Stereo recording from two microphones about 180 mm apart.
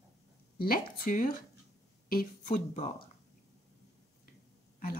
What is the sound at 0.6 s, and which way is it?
A woman's voice, 50° left (ahead or behind).